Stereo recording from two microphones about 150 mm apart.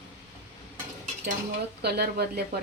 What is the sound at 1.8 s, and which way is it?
Speech, 90° right.